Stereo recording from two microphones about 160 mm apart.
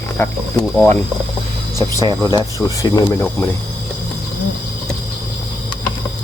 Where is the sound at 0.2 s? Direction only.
15° left (ahead or behind).